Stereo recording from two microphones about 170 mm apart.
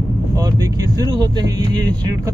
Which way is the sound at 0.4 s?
20° right (ahead or behind).